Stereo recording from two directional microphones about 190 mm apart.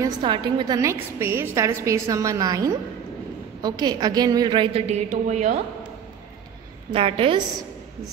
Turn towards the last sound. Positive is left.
turn(degrees=-30)  # may be behind; listen again after turning